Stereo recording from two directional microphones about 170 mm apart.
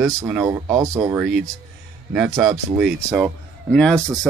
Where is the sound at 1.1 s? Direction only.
5° right (ahead or behind).